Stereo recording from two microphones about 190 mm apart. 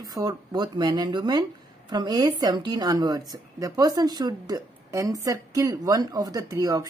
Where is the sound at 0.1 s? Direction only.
20° right (ahead or behind).